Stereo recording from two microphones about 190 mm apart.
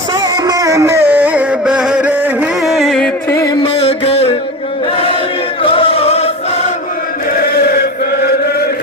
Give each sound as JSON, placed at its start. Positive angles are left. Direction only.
{"t": 0.2, "sound": "music", "side_deg": -20}
{"t": 3.8, "sound": "music", "side_deg": 35}
{"t": 5.7, "sound": "music", "side_deg": 30}
{"t": 7.3, "sound": "chant", "side_deg": 55}